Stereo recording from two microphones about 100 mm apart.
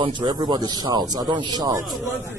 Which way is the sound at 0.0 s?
50° right (ahead or behind).